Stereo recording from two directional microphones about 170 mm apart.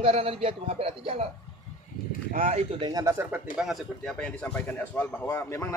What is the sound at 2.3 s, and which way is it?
Speech, 55° right (ahead or behind).